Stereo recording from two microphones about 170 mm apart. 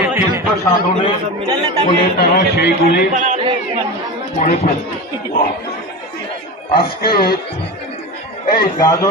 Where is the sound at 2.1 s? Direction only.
70° left (ahead or behind).